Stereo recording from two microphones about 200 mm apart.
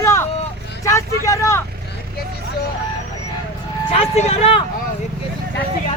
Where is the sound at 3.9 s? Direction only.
30° left (ahead or behind).